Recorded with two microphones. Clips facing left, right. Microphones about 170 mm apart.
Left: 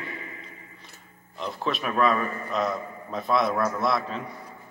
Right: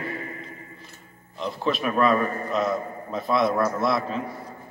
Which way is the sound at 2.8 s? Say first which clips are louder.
Right 4 dB; 45° right (ahead or behind).